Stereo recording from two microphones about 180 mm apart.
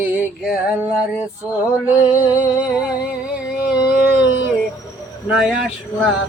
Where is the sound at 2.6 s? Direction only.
5° right (ahead or behind).